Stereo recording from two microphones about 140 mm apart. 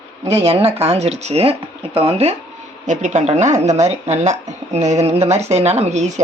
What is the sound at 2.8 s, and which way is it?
A woman's voice, 60° right (ahead or behind).